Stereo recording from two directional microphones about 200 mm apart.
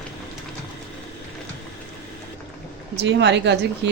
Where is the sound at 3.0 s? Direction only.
60° right (ahead or behind).